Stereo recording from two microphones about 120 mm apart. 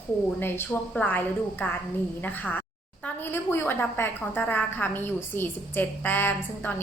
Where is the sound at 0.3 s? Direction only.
20° left (ahead or behind).